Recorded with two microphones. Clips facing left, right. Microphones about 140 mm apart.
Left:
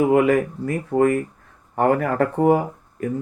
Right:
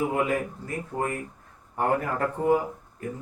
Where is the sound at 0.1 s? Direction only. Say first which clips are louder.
Left 9 dB; 90° left.